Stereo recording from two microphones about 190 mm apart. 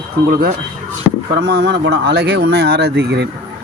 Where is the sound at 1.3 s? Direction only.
60° right (ahead or behind).